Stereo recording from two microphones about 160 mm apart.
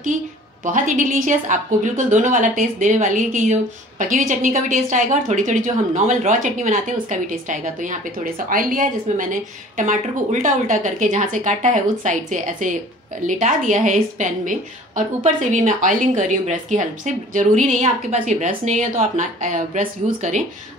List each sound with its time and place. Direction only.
0.7 s a woman's voice: 55° right (ahead or behind)